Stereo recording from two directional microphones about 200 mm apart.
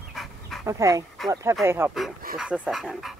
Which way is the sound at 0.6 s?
15° right (ahead or behind).